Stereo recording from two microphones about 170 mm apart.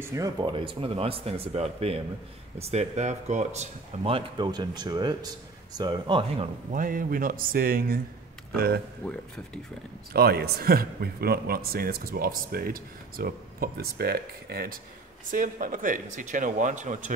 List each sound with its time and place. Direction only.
0.0 s speech: 20° right (ahead or behind)
6.7 s a man's voice: 55° right (ahead or behind)
10.1 s a man's voice: 70° right (ahead or behind)
15.3 s speech: 50° right (ahead or behind)